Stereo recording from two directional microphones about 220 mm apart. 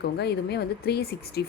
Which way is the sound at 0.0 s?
50° left (ahead or behind).